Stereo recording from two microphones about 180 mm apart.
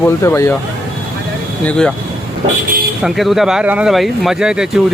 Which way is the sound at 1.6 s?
5° left (ahead or behind).